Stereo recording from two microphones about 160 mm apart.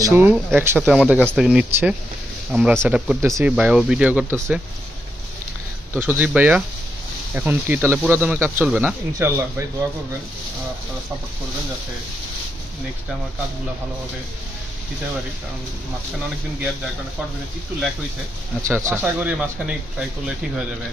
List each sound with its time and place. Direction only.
0.0 s speech: 15° right (ahead or behind)
3.2 s speech: 20° right (ahead or behind)
3.4 s speech: 5° right (ahead or behind)
5.9 s speech: 10° right (ahead or behind)
18.7 s speech: 15° right (ahead or behind)